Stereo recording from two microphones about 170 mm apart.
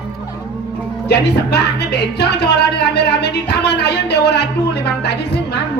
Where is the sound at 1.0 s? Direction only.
80° left.